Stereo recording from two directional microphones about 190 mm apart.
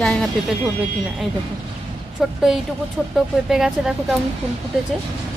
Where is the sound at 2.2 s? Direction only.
Centre (ahead or behind).